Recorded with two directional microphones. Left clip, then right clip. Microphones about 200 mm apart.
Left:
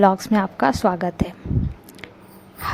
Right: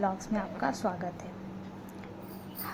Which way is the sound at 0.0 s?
45° left (ahead or behind).